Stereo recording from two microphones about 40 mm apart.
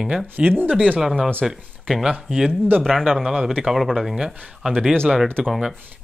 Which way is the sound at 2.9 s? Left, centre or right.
Centre.